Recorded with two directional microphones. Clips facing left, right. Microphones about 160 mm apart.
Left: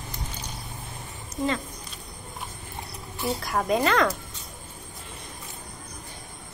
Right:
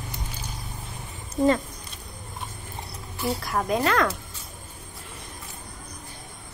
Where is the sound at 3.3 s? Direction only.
Centre (ahead or behind).